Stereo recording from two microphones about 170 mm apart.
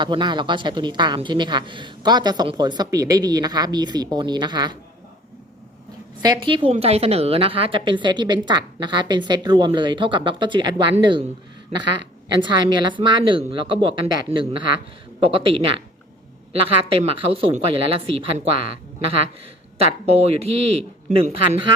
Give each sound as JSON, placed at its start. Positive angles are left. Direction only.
{"t": 0.0, "sound": "a woman's voice", "side_deg": -25}
{"t": 6.2, "sound": "a woman's voice", "side_deg": -25}